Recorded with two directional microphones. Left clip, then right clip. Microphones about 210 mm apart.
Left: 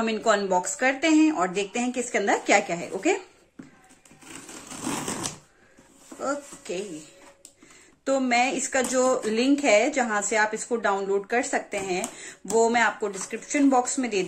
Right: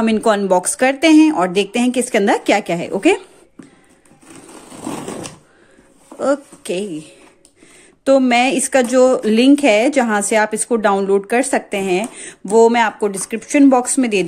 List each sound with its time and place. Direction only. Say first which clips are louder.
0.0 s speech: right 8 dB; 45° right (ahead or behind)
4.8 s shuffling cards: right 4 dB; centre (ahead or behind)
6.1 s a sound: right 12 dB; 55° right (ahead or behind)
8.0 s speech: right 10 dB; 50° right (ahead or behind)